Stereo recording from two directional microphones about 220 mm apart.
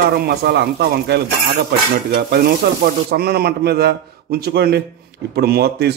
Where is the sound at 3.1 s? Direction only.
45° right (ahead or behind).